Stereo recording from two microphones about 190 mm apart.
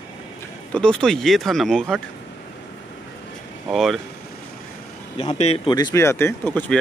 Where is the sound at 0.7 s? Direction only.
5° left (ahead or behind).